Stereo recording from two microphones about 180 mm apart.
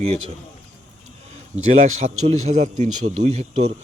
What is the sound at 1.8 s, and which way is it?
Speech, 40° right (ahead or behind).